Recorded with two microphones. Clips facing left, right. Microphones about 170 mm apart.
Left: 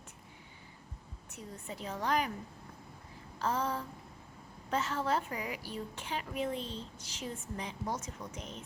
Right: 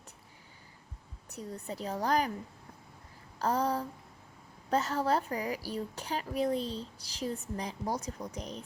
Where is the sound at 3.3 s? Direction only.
40° right (ahead or behind).